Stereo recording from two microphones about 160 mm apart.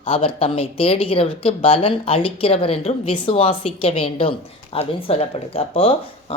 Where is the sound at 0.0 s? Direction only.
35° left (ahead or behind).